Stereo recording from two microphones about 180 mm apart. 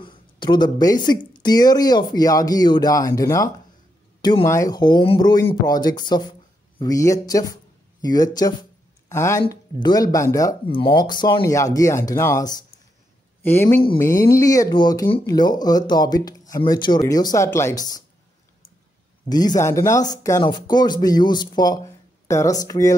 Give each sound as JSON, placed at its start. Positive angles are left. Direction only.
{"t": 0.0, "sound": "speech", "side_deg": 25}
{"t": 19.2, "sound": "speech", "side_deg": 20}